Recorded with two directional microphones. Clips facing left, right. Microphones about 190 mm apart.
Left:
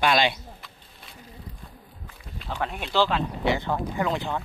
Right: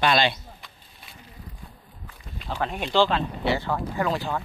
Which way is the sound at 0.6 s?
Centre (ahead or behind).